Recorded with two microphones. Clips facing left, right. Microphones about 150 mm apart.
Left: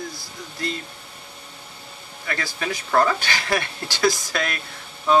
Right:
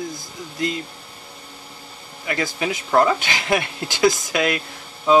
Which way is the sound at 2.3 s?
15° right (ahead or behind).